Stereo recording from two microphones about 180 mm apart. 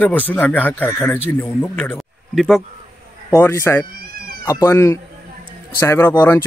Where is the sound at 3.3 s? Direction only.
15° left (ahead or behind).